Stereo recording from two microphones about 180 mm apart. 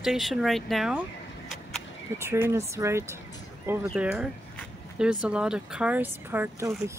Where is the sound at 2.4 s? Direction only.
15° right (ahead or behind).